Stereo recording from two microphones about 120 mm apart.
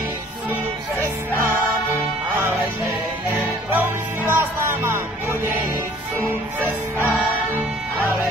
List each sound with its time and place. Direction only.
3.7 s music: 15° right (ahead or behind)